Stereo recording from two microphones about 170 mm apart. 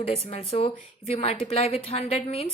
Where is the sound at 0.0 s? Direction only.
35° left (ahead or behind).